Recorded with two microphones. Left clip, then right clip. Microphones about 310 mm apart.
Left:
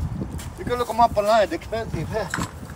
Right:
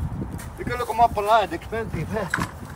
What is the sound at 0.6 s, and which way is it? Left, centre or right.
Speech, left.